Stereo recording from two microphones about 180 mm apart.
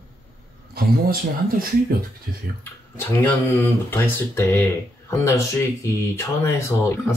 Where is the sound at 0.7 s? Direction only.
55° right (ahead or behind).